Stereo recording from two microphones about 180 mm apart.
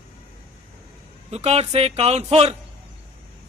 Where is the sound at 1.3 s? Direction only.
35° right (ahead or behind).